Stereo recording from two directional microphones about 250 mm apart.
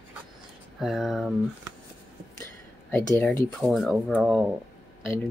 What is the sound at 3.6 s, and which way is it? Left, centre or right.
Speech, centre.